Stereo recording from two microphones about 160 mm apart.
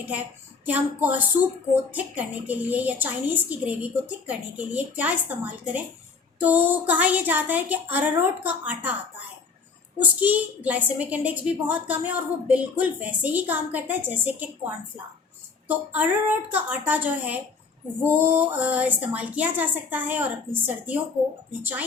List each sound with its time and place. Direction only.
0.6 s a child's voice: 10° right (ahead or behind)
10.0 s a child's voice: 10° right (ahead or behind)